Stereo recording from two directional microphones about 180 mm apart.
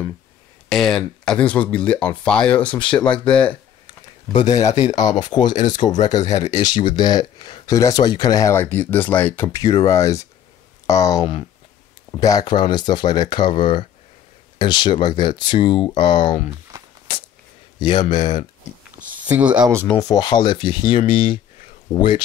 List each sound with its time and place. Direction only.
0.7 s speech: centre (ahead or behind)
4.7 s speech: 40° left (ahead or behind)
5.1 s speech: 25° left (ahead or behind)
16.7 s walk: 20° right (ahead or behind)
17.7 s speech: 25° left (ahead or behind)
19.2 s speech: 10° right (ahead or behind)
19.9 s speech: 20° left (ahead or behind)